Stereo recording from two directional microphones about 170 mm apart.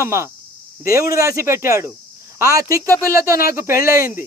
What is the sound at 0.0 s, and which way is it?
Speech, 15° right (ahead or behind).